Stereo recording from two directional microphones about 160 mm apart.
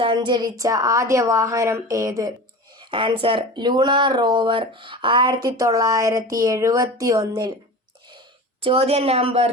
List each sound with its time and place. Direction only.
0.0 s speech: 30° right (ahead or behind)
8.6 s a woman's voice: 35° right (ahead or behind)